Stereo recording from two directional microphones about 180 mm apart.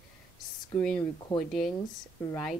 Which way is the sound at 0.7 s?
5° left (ahead or behind).